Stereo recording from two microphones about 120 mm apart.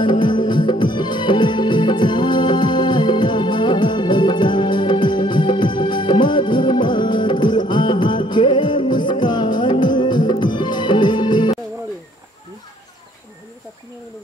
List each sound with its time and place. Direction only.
0.0 s music: 40° left (ahead or behind)